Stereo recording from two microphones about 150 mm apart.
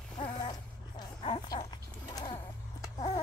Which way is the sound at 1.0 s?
30° left (ahead or behind).